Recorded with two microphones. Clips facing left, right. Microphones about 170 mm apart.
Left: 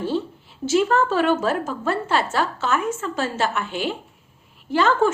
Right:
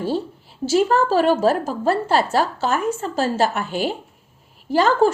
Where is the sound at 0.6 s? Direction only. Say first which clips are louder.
Right 2 dB; 35° right (ahead or behind).